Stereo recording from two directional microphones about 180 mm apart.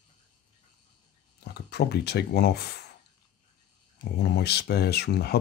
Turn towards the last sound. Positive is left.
turn(degrees=60)  # may be behind; listen again after turning